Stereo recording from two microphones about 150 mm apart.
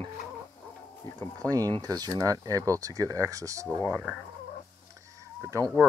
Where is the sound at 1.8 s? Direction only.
25° right (ahead or behind).